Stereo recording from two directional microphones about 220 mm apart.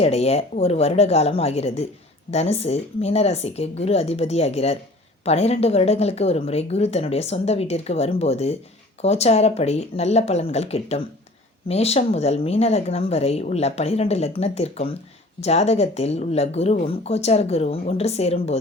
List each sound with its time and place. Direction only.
0.0 s a woman's voice: 30° left (ahead or behind)